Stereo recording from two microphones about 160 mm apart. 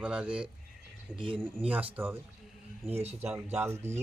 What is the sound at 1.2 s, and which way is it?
Speech, 30° right (ahead or behind).